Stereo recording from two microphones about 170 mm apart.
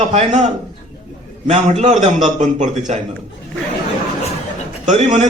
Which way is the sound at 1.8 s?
45° right (ahead or behind).